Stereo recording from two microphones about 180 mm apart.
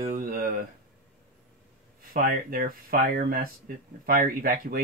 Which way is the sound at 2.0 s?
55° right (ahead or behind).